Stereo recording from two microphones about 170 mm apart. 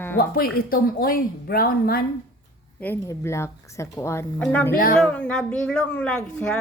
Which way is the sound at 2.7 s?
10° left (ahead or behind).